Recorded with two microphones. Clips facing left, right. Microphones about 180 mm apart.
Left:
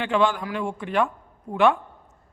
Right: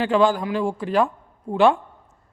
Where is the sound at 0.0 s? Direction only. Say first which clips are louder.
Right 4 dB; 35° right (ahead or behind).